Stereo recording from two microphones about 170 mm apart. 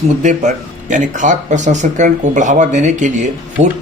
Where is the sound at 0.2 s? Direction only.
45° right (ahead or behind).